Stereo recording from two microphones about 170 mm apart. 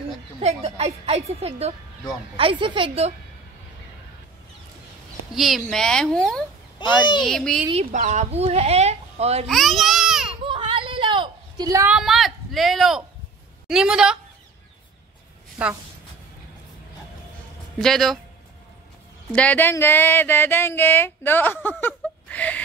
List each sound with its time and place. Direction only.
0.4 s speech: 40° right (ahead or behind)
5.3 s a woman's voice: centre (ahead or behind)
6.8 s speech: 25° left (ahead or behind)
7.2 s a woman's voice: centre (ahead or behind)
7.7 s speech: 45° right (ahead or behind)
9.5 s baby cry: centre (ahead or behind)
10.4 s a sound: 30° right (ahead or behind)
11.9 s a woman's voice: centre (ahead or behind)
15.6 s a woman's voice: 5° right (ahead or behind)
17.7 s a woman's voice: centre (ahead or behind)
19.3 s speech: 10° left (ahead or behind)